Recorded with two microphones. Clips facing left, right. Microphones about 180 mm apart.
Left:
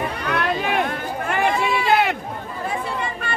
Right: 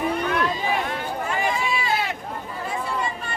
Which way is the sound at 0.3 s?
70° left (ahead or behind).